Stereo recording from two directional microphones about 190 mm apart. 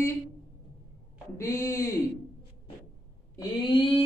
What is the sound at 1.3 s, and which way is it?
Speech, 15° left (ahead or behind).